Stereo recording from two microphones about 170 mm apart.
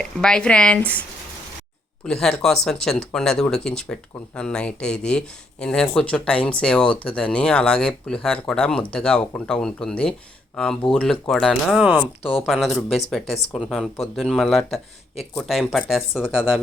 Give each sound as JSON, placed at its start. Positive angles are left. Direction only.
{"t": 0.0, "sound": "speech", "side_deg": 5}
{"t": 2.0, "sound": "speech", "side_deg": 5}